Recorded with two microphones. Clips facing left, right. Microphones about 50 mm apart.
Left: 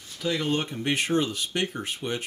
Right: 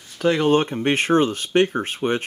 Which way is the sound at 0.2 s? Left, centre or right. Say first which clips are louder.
Right 9 dB; right.